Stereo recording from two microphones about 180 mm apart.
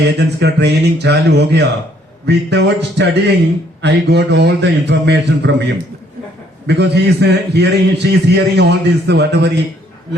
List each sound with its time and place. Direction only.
0.2 s a man's voice: 70° right (ahead or behind)